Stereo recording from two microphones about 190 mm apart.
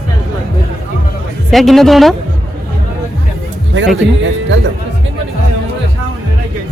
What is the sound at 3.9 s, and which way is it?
Speech, 80° right.